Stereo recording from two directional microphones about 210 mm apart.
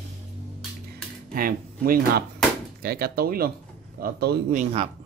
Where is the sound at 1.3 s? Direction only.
45° right (ahead or behind).